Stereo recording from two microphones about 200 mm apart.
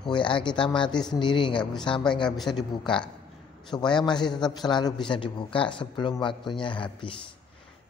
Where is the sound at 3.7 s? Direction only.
20° left (ahead or behind).